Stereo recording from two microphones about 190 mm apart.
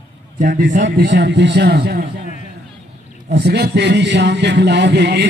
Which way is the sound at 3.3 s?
60° right (ahead or behind).